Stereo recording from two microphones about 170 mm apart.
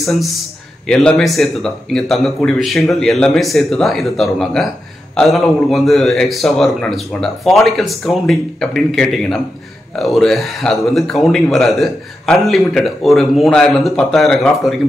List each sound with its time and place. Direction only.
0.0 s a man's voice: centre (ahead or behind)